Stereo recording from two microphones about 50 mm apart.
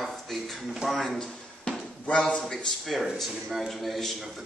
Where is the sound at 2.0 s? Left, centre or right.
Centre.